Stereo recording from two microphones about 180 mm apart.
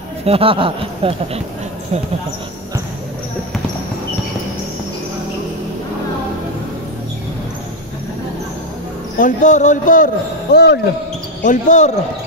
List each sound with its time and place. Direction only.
0.2 s speech: 30° right (ahead or behind)
9.2 s a man's voice: 45° left (ahead or behind); by 10.8 s 65° left (ahead or behind)
11.4 s a man's voice: 45° left (ahead or behind)